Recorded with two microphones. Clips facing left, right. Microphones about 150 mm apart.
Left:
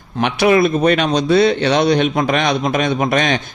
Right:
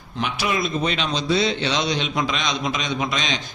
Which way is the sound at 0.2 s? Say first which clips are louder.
Left 11 dB; 65° left (ahead or behind).